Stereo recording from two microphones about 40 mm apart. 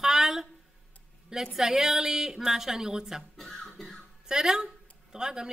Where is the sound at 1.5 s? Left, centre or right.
Centre.